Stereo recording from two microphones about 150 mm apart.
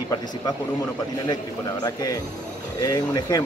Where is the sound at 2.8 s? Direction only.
25° left (ahead or behind).